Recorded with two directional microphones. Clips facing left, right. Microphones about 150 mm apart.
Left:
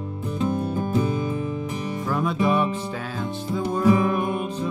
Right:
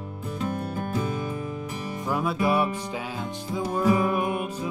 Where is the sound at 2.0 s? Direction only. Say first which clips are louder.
Left 2 dB; 10° right (ahead or behind).